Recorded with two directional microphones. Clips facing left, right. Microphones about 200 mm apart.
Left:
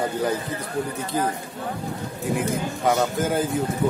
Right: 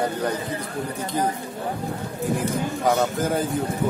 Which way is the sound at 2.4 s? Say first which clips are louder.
Even; centre (ahead or behind).